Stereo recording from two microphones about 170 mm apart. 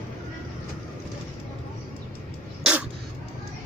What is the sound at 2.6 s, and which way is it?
Dog, 5° right (ahead or behind).